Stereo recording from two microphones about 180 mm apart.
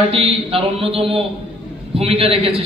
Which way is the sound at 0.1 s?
30° right (ahead or behind).